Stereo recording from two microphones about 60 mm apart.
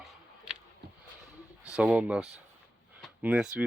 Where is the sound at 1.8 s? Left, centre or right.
Right.